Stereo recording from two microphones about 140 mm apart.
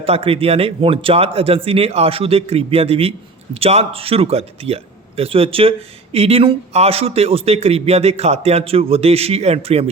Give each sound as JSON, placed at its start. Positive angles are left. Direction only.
{"t": 0.0, "sound": "a man's voice", "side_deg": -45}